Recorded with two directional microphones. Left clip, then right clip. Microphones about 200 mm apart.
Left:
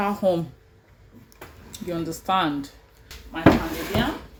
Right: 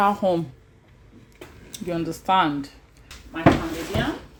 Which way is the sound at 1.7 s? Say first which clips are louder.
Right 2 dB; 30° right (ahead or behind).